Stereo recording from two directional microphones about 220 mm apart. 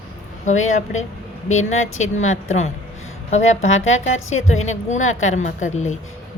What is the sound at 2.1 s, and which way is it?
Speech, 30° left (ahead or behind).